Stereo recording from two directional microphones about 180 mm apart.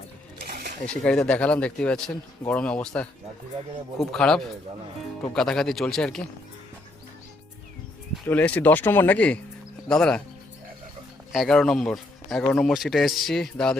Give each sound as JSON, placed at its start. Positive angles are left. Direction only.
{"t": 0.4, "sound": "a sound", "side_deg": -55}
{"t": 1.0, "sound": "speech", "side_deg": 5}
{"t": 8.3, "sound": "speech", "side_deg": 10}
{"t": 11.3, "sound": "speech", "side_deg": 0}